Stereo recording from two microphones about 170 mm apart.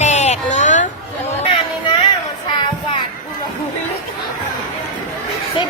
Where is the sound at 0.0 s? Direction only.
45° left (ahead or behind).